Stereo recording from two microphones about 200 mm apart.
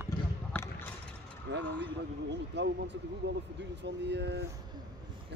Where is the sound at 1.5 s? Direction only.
60° right (ahead or behind).